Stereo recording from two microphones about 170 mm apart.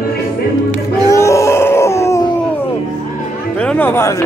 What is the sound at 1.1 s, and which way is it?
Groan, 15° left (ahead or behind).